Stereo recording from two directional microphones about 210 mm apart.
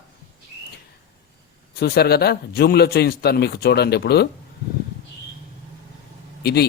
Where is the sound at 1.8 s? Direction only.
50° left (ahead or behind).